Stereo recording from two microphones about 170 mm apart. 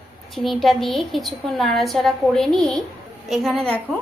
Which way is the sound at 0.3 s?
Centre (ahead or behind).